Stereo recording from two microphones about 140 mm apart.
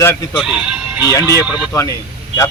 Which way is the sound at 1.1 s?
25° left (ahead or behind).